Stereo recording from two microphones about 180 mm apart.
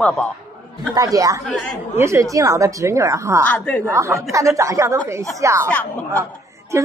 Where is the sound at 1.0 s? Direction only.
20° right (ahead or behind).